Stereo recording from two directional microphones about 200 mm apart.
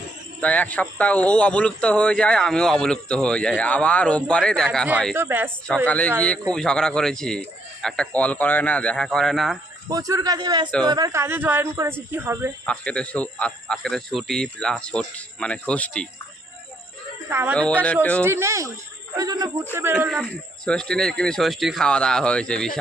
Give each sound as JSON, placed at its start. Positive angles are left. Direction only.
{"t": 0.3, "sound": "speech", "side_deg": 5}
{"t": 5.1, "sound": "speech", "side_deg": -10}
{"t": 5.6, "sound": "a man's voice", "side_deg": 5}
{"t": 9.9, "sound": "a man's voice", "side_deg": -15}
{"t": 12.6, "sound": "speech", "side_deg": 5}
{"t": 17.2, "sound": "speech", "side_deg": -10}
{"t": 17.6, "sound": "a man's voice", "side_deg": 5}
{"t": 18.2, "sound": "a man's voice", "side_deg": -15}
{"t": 20.7, "sound": "speech", "side_deg": 5}